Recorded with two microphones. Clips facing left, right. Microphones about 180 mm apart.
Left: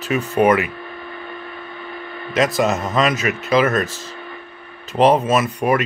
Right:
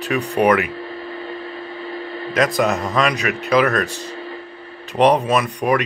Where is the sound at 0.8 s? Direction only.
30° right (ahead or behind).